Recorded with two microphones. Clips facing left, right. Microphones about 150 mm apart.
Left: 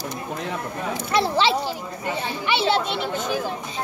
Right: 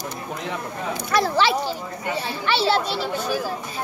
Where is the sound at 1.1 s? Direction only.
25° left (ahead or behind).